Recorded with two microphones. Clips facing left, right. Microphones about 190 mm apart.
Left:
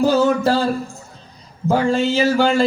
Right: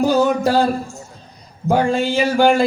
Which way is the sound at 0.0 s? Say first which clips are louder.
Even; 15° right (ahead or behind).